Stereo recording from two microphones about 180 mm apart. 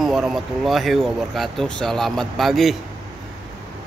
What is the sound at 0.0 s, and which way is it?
Speech, 5° right (ahead or behind).